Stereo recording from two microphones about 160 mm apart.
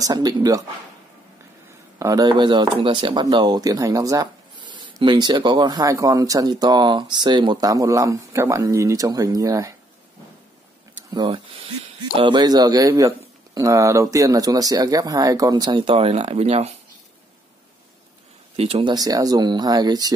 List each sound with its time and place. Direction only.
0.0 s speech: 25° right (ahead or behind)
2.0 s speech: 20° right (ahead or behind)
11.1 s speech: 35° right (ahead or behind)
18.6 s speech: 35° right (ahead or behind)